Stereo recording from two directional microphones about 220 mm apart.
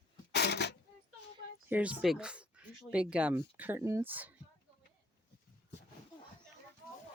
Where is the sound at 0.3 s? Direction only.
50° left (ahead or behind).